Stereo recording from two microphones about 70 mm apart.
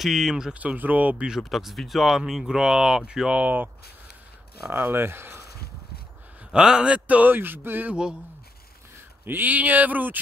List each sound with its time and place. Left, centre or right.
0.0 s speech: centre
0.6 s a man's voice: right
1.4 s speech: centre; by 3.7 s right
4.8 s speech: right
6.5 s a man's voice: centre; by 7.9 s right
7.9 s speech: centre
9.2 s a man's voice: right